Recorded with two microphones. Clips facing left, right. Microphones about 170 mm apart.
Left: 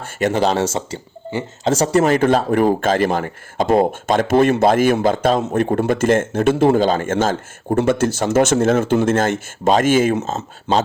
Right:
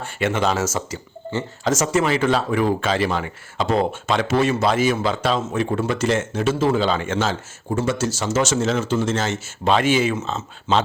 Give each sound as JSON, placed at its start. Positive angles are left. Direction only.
{"t": 0.0, "sound": "speech", "side_deg": 40}
{"t": 2.0, "sound": "speech", "side_deg": 45}
{"t": 6.7, "sound": "speech", "side_deg": 45}